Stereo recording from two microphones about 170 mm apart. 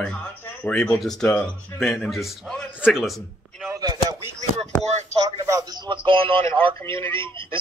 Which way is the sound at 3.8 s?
25° right (ahead or behind).